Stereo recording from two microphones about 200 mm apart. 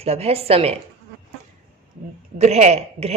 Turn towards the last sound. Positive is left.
turn(degrees=-30)  # may be behind; listen again after turning